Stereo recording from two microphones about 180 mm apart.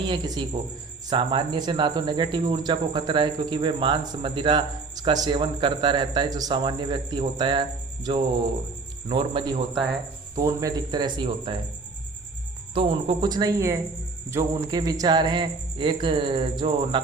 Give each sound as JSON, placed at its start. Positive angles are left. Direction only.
{"t": 0.1, "sound": "speech", "side_deg": -25}
{"t": 12.7, "sound": "speech", "side_deg": -30}